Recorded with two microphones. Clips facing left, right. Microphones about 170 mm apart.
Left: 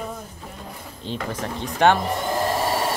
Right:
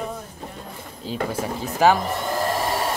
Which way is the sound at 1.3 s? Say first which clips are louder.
Right 2 dB; 5° right (ahead or behind).